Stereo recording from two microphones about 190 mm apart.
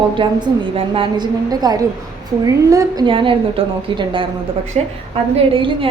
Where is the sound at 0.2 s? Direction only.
25° right (ahead or behind).